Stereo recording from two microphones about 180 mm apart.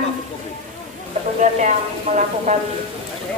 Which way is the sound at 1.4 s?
40° right (ahead or behind).